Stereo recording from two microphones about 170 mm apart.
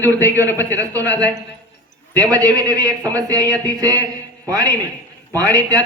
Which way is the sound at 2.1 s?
20° right (ahead or behind).